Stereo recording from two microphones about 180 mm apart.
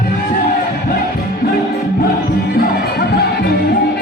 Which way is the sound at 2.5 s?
60° left (ahead or behind).